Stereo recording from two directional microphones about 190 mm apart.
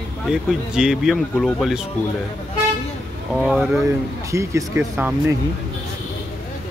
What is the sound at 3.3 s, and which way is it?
Speech, 5° right (ahead or behind).